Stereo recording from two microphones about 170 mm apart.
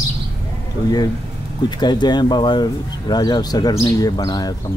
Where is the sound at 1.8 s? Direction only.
25° left (ahead or behind).